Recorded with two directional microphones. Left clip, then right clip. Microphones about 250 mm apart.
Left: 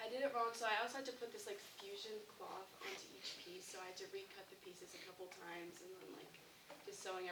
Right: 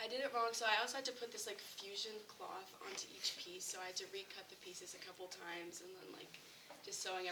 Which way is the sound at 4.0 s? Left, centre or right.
Centre.